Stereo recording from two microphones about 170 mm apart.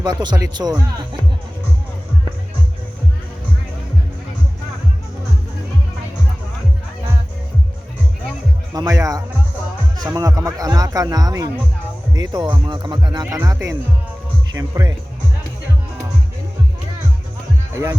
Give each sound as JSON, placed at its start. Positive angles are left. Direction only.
{"t": 0.0, "sound": "speech", "side_deg": -25}
{"t": 8.7, "sound": "speech", "side_deg": -20}